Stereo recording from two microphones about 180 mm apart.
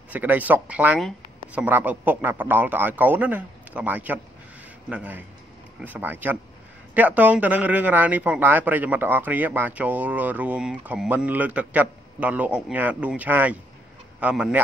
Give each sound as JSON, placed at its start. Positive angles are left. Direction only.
{"t": 0.1, "sound": "speech", "side_deg": -10}